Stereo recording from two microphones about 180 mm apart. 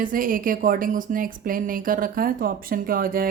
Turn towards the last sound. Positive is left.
turn(degrees=-55)  # may be behind; listen again after turning